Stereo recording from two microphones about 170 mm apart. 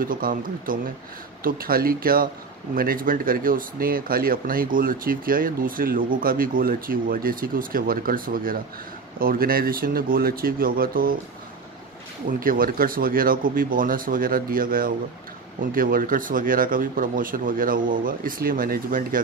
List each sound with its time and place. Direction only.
0.0 s speech: 55° right (ahead or behind)
12.3 s speech: 55° right (ahead or behind)